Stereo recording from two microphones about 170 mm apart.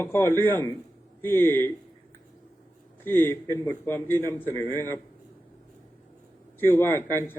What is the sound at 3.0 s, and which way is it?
A man's voice, 15° left (ahead or behind).